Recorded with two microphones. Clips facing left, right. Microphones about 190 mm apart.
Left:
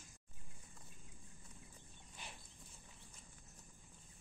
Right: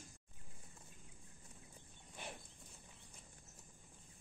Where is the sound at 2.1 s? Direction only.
55° right (ahead or behind).